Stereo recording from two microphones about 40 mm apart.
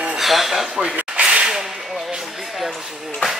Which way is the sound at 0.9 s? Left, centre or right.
Right.